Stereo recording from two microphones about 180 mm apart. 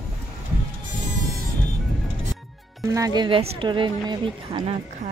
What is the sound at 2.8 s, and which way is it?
Speech, 20° right (ahead or behind).